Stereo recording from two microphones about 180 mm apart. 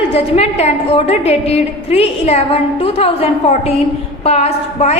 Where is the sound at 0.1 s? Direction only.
35° left (ahead or behind).